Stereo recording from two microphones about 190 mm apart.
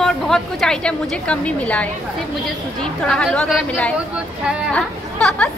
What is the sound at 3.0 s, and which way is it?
A woman's voice, 5° left (ahead or behind).